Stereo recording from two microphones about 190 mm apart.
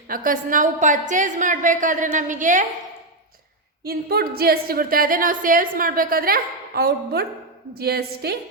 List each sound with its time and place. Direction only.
0.1 s a woman's voice: 45° right (ahead or behind)
3.8 s a woman's voice: 55° right (ahead or behind)